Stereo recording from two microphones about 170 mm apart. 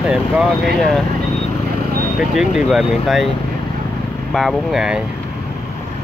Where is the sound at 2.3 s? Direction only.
5° right (ahead or behind).